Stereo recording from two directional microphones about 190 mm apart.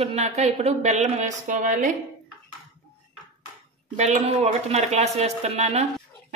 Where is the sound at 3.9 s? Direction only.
35° right (ahead or behind).